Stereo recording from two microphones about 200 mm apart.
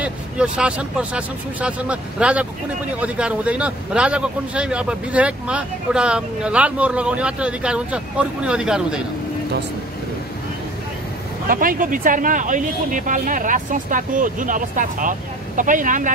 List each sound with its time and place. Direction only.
0.0 s a man's voice: 5° right (ahead or behind)
11.4 s speech: 45° right (ahead or behind)